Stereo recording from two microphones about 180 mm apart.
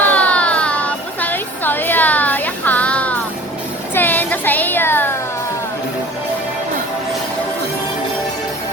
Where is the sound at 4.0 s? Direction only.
10° left (ahead or behind).